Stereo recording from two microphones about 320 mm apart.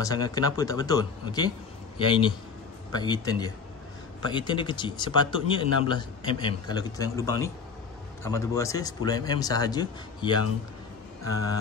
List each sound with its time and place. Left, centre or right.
0.0 s speech: centre